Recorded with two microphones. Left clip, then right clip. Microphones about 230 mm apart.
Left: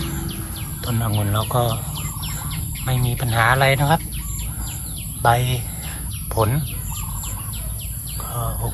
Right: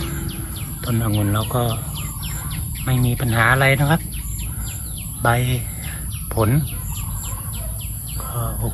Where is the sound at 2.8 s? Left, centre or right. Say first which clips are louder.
Right 3 dB; centre.